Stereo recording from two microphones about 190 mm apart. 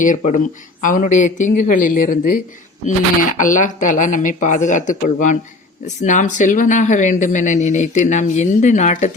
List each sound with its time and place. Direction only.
0.0 s speech: 45° left (ahead or behind)